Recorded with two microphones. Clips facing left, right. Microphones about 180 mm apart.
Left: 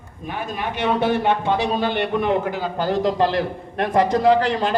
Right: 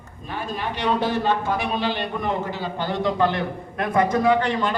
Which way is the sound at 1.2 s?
25° left (ahead or behind).